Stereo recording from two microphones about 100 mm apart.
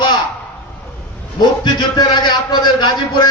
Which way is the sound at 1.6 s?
45° left (ahead or behind).